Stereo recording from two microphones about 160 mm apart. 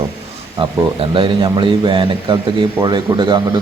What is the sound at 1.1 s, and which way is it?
A man's voice, 30° right (ahead or behind).